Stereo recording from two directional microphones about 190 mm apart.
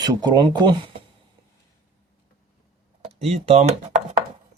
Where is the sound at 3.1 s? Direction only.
30° right (ahead or behind).